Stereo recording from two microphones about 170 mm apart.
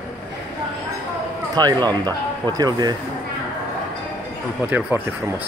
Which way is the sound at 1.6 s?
25° right (ahead or behind).